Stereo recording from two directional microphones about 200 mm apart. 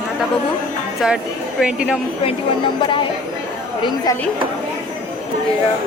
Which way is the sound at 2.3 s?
25° left (ahead or behind).